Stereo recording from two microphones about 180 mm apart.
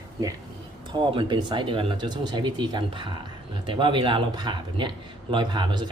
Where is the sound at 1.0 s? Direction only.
30° right (ahead or behind).